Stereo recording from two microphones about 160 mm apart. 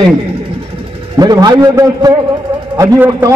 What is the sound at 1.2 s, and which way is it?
A man's voice, 25° right (ahead or behind).